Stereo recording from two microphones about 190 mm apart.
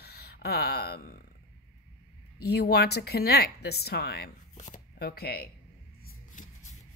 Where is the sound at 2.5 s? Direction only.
55° left (ahead or behind).